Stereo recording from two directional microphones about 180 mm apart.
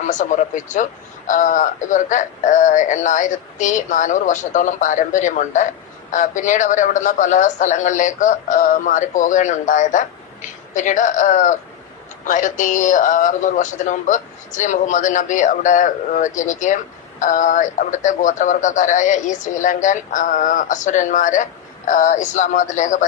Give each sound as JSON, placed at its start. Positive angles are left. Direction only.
{"t": 0.1, "sound": "a man's voice", "side_deg": 45}